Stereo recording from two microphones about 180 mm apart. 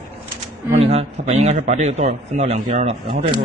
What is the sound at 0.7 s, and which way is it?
A man's voice, 35° right (ahead or behind).